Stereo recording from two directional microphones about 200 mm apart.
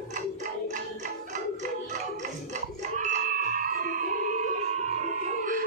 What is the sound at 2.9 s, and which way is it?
Music, 40° right (ahead or behind).